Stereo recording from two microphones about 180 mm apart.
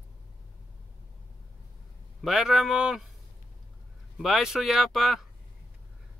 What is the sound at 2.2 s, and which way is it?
Speech, centre (ahead or behind).